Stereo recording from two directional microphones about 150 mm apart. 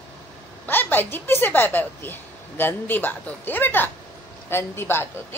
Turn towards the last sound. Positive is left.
turn(degrees=15)  # may be behind; listen again after turning